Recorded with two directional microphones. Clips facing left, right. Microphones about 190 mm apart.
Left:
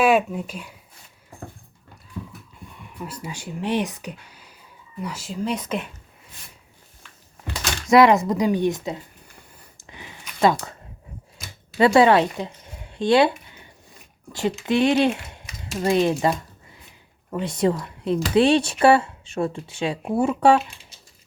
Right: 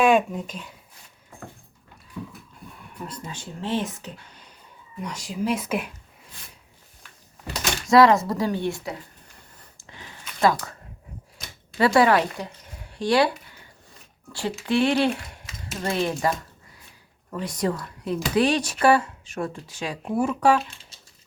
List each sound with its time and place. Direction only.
0.0 s speech: 5° left (ahead or behind)
2.6 s speech: centre (ahead or behind)
7.9 s speech: 20° left (ahead or behind)
9.7 s a sound: 15° left (ahead or behind)
11.8 s speech: 25° left (ahead or behind)
14.7 s speech: 20° left (ahead or behind)
17.3 s speech: 25° left (ahead or behind)